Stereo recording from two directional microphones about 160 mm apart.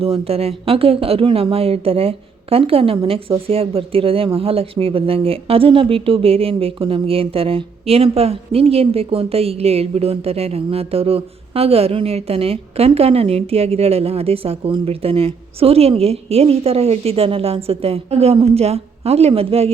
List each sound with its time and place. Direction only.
0.0 s speech: 40° right (ahead or behind)